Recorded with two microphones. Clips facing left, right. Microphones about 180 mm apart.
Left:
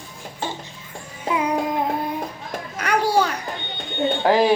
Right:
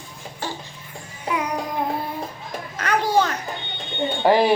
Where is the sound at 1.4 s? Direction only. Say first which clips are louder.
Left 4 dB; 25° left (ahead or behind).